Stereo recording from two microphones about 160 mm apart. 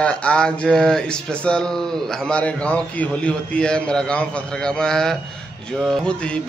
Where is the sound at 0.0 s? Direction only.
5° left (ahead or behind).